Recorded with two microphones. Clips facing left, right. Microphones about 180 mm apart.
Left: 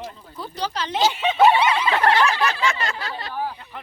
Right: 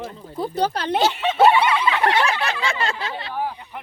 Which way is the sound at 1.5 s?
40° left (ahead or behind).